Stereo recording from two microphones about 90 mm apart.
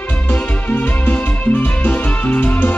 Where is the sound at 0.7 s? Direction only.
20° left (ahead or behind).